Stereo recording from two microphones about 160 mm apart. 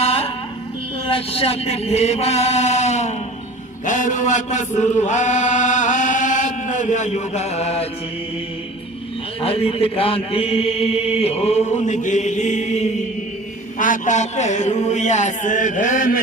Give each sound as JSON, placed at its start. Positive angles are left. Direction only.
{"t": 0.0, "sound": "a sound", "side_deg": 40}
{"t": 1.0, "sound": "chant", "side_deg": 35}
{"t": 9.4, "sound": "mantra", "side_deg": 35}